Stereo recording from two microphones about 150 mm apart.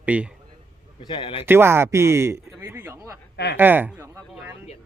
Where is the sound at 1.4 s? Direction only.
15° right (ahead or behind).